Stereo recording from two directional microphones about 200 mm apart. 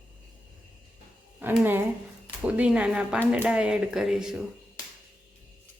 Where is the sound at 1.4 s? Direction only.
10° right (ahead or behind).